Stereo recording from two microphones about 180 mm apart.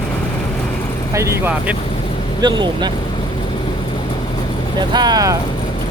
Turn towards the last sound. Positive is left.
turn(degrees=-20)  # may be behind; listen again after turning